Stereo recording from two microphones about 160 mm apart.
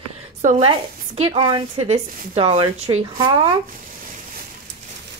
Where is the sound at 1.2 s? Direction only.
30° right (ahead or behind).